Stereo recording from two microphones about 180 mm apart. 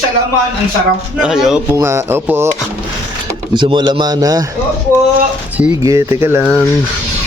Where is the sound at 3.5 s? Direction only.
25° right (ahead or behind).